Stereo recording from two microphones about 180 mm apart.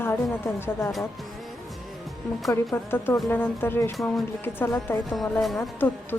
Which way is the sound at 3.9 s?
Centre (ahead or behind).